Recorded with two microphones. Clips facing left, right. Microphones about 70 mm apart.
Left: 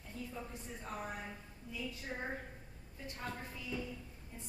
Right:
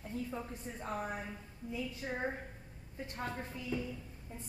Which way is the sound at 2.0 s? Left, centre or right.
Right.